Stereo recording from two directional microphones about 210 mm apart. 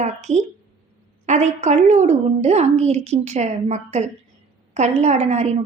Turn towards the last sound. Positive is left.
turn(degrees=-30)  # may be behind; listen again after turning